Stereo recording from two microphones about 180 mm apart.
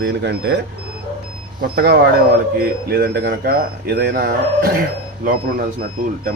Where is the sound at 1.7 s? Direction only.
65° right (ahead or behind).